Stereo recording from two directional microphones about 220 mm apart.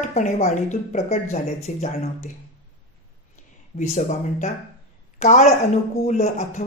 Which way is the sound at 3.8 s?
35° left (ahead or behind).